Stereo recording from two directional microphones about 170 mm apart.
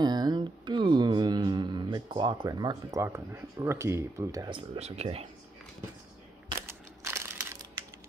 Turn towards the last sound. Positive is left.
turn(degrees=-15)  # may be behind; listen again after turning